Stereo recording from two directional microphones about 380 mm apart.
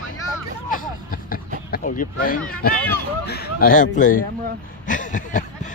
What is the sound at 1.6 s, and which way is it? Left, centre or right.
Speech, left.